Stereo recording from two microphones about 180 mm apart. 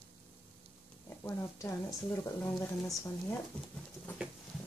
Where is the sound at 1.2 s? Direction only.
15° left (ahead or behind).